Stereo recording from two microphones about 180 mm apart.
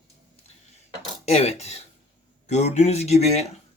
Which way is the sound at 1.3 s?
35° left (ahead or behind).